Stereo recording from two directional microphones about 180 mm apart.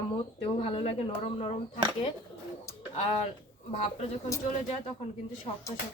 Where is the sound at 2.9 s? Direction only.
35° left (ahead or behind).